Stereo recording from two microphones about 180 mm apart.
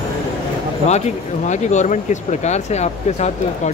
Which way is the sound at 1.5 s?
40° left (ahead or behind).